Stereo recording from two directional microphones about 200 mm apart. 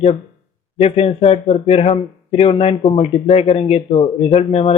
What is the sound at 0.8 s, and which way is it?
A man's voice, 30° left (ahead or behind).